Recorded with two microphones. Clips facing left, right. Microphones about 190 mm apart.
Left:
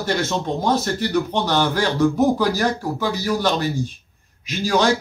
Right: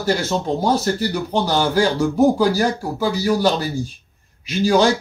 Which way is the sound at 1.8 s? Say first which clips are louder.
Right 3 dB; 10° right (ahead or behind).